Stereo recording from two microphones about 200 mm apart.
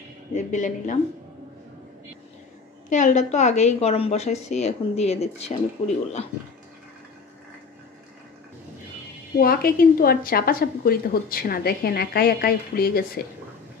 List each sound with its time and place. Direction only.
0.3 s a woman's voice: 35° left (ahead or behind)
2.9 s a woman's voice: 40° left (ahead or behind)
9.4 s a woman's voice: 45° left (ahead or behind)